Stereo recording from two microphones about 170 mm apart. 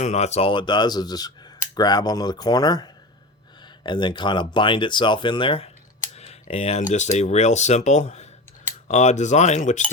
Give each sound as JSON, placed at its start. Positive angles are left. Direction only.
{"t": 0.0, "sound": "speech", "side_deg": 40}
{"t": 6.1, "sound": "typing", "side_deg": 40}
{"t": 6.9, "sound": "speech", "side_deg": 45}